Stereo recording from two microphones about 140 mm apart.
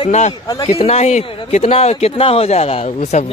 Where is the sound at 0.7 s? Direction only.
50° left (ahead or behind).